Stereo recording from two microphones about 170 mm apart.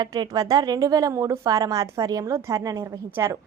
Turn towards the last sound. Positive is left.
turn(degrees=-20)  # may be behind; listen again after turning